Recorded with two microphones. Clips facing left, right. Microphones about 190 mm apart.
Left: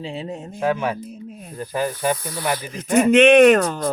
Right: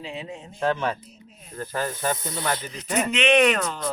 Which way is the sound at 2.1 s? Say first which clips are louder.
Left 2 dB; 20° right (ahead or behind).